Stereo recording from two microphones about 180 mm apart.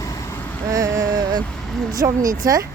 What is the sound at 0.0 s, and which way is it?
Vehicle, 20° left (ahead or behind).